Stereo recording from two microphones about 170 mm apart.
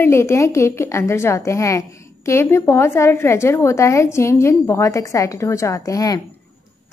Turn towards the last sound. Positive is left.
turn(degrees=20)  # may be behind; listen again after turning